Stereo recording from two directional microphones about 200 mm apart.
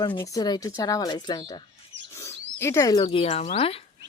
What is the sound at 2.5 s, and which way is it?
Speech, 15° left (ahead or behind).